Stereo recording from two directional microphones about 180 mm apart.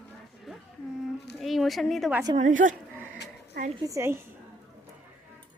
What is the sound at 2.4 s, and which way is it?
Speech, 45° right (ahead or behind).